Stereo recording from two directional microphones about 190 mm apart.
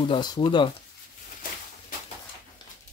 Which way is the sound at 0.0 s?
25° left (ahead or behind).